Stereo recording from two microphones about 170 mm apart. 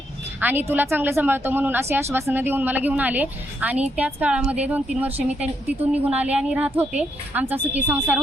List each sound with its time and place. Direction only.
0.3 s a woman's voice: 10° right (ahead or behind)